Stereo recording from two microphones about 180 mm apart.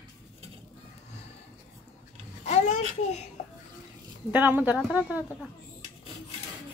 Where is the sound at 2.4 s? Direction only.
40° left (ahead or behind).